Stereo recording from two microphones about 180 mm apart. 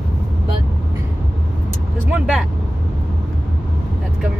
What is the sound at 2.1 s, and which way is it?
Speech, 5° right (ahead or behind).